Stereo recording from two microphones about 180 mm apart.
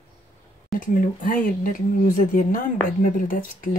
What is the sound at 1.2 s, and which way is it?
Speech, 50° left (ahead or behind).